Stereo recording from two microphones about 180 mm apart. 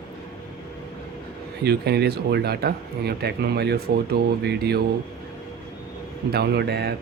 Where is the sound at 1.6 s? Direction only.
65° right (ahead or behind).